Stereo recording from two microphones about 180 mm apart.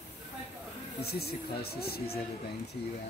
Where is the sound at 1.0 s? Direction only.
60° left (ahead or behind).